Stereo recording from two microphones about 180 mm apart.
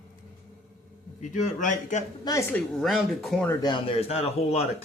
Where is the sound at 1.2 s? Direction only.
40° left (ahead or behind).